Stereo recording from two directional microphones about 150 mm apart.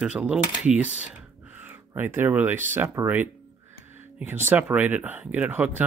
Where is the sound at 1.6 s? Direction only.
15° right (ahead or behind).